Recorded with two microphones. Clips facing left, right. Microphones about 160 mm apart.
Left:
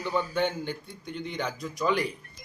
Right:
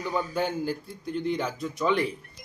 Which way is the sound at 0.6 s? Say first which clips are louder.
Right 5 dB; centre (ahead or behind).